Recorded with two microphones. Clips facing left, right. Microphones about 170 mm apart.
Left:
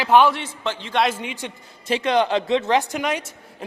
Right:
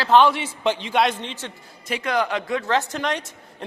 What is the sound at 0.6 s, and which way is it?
Speech, 15° right (ahead or behind).